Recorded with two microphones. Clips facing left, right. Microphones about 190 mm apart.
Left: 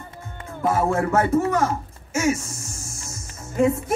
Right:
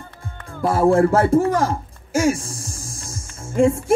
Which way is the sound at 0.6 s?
30° right (ahead or behind).